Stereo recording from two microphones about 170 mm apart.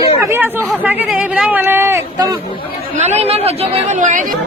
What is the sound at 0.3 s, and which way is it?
Chatter, 15° right (ahead or behind).